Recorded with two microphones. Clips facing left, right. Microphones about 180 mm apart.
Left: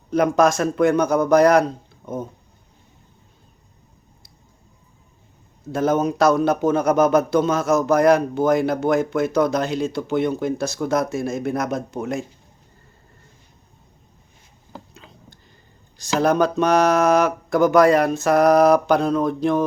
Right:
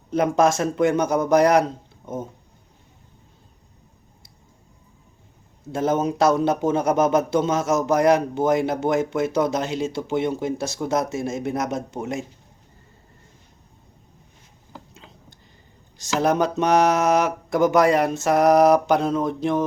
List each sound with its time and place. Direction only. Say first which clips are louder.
0.1 s a man's voice: left 2 dB; 25° right (ahead or behind)
5.7 s a man's voice: left 2 dB; 25° right (ahead or behind)
16.0 s a man's voice: left 2 dB; 20° right (ahead or behind)